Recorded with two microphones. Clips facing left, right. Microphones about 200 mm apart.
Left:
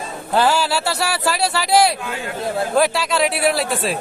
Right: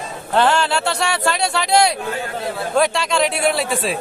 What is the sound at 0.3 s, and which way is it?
Speech, 5° left (ahead or behind).